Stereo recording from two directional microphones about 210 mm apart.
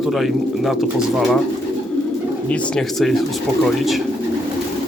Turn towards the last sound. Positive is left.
turn(degrees=0)  # may be behind; listen again after turning